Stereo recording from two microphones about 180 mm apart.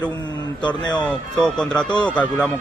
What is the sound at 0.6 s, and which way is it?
Speech, 25° left (ahead or behind).